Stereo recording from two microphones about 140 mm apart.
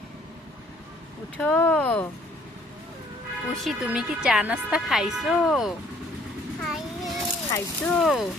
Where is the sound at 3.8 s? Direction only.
5° right (ahead or behind).